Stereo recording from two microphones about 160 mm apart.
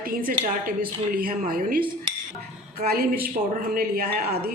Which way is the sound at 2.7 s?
75° right (ahead or behind).